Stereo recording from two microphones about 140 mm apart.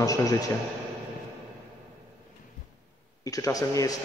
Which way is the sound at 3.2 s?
25° left (ahead or behind).